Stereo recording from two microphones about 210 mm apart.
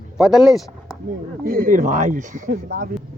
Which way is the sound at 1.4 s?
40° right (ahead or behind).